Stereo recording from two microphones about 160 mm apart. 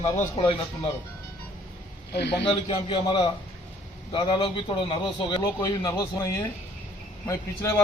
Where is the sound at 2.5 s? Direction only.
35° left (ahead or behind).